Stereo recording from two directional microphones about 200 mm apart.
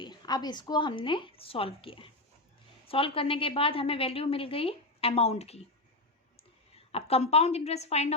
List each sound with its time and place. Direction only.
0.0 s a woman's voice: 20° left (ahead or behind)
6.7 s a woman's voice: 30° left (ahead or behind)